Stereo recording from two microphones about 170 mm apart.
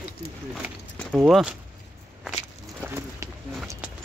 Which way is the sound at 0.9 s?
Centre (ahead or behind).